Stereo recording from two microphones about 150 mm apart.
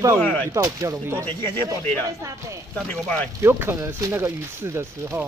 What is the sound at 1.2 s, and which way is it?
Speech, 15° left (ahead or behind).